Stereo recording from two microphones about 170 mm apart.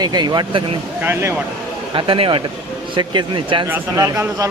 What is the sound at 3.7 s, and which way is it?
Speech, 15° right (ahead or behind).